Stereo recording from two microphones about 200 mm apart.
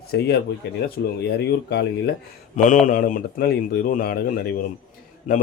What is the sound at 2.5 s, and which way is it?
Speech, 40° left (ahead or behind).